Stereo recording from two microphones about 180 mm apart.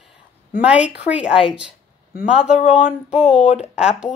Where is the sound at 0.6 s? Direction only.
5° right (ahead or behind).